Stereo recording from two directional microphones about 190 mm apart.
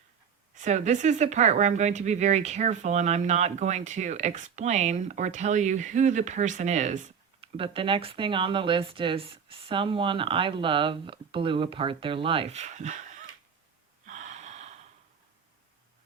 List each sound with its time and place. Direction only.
0.5 s speech: 40° right (ahead or behind)
14.1 s gasp: 40° right (ahead or behind)